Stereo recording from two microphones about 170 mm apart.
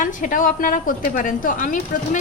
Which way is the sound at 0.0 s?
50° left (ahead or behind).